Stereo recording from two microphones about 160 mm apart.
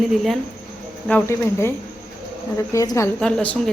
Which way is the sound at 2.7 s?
20° left (ahead or behind).